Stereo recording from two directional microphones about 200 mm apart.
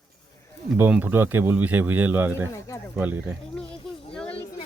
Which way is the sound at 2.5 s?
15° left (ahead or behind).